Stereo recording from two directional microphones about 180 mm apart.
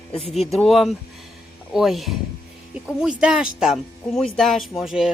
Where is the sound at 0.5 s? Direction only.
Centre (ahead or behind).